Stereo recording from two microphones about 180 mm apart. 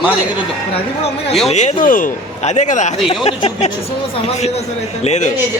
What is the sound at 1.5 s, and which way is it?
A man's voice, 40° left (ahead or behind).